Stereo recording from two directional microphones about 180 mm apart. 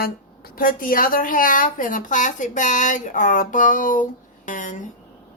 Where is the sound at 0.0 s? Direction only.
55° left (ahead or behind).